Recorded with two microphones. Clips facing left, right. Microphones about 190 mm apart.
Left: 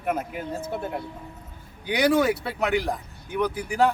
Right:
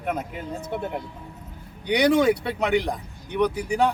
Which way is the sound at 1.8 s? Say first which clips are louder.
Right 2 dB; 5° left (ahead or behind).